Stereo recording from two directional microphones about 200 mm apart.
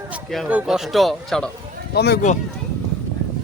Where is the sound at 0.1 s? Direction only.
5° right (ahead or behind).